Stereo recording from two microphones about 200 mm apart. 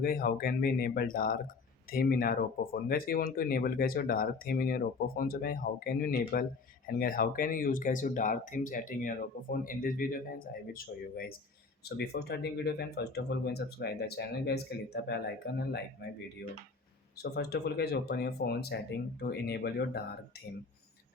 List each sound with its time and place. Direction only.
0.0 s speech: 50° left (ahead or behind)
17.3 s speech: 55° left (ahead or behind)